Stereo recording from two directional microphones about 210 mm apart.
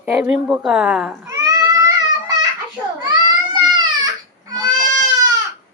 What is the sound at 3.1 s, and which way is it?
Baby cry, 20° right (ahead or behind).